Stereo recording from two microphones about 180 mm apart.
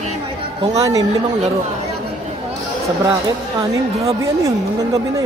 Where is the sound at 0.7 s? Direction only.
20° right (ahead or behind).